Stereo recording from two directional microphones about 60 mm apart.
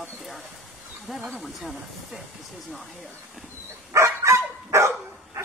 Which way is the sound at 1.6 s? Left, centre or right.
Centre.